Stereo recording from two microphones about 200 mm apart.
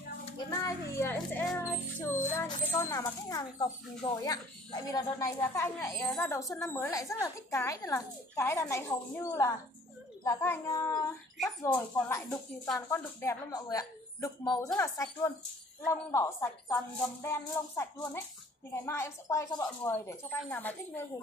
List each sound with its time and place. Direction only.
0.5 s a woman's voice: 15° left (ahead or behind)
12.6 s speech: centre (ahead or behind)
13.2 s a woman's voice: 15° left (ahead or behind)